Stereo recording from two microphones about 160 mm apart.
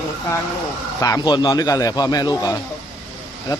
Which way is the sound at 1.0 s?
25° left (ahead or behind).